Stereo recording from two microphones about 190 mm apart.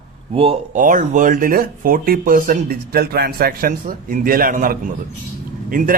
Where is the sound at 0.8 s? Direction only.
45° right (ahead or behind).